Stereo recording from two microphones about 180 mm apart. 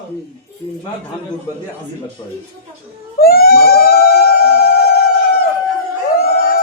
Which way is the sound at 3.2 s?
55° left (ahead or behind).